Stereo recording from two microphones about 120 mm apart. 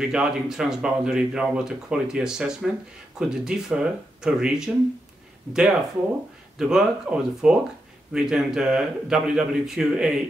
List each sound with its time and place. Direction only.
0.0 s speech: 5° right (ahead or behind)
6.6 s speech: 5° right (ahead or behind)